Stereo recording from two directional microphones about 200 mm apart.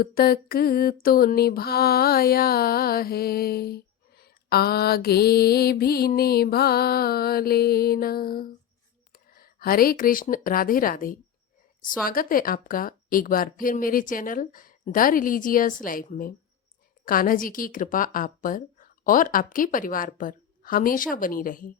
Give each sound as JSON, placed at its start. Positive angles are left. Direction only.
{"t": 0.0, "sound": "mantra", "side_deg": 50}
{"t": 9.1, "sound": "speech", "side_deg": 45}
{"t": 12.0, "sound": "mantra", "side_deg": 45}